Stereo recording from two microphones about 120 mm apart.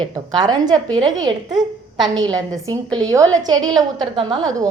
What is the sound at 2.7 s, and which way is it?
A woman's voice, 30° right (ahead or behind).